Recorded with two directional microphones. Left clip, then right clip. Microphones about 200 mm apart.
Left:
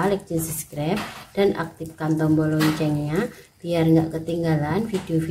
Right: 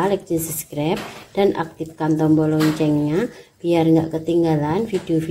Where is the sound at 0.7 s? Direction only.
25° right (ahead or behind).